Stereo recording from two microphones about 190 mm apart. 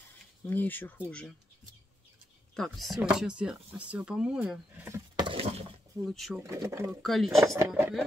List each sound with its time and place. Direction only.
0.5 s speech: 10° left (ahead or behind)
2.5 s speech: centre (ahead or behind)
6.0 s speech: centre (ahead or behind)
6.4 s speech: 15° right (ahead or behind)
7.0 s speech: centre (ahead or behind)
7.4 s speech: 15° right (ahead or behind)